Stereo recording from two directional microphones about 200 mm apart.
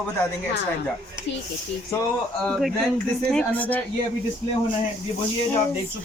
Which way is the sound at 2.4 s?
5° left (ahead or behind).